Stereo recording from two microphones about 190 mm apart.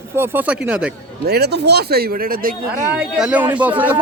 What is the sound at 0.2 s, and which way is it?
Speech, 10° right (ahead or behind).